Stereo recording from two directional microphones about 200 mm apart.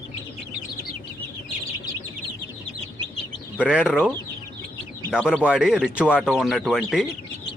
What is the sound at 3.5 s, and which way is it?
Speech, 5° right (ahead or behind).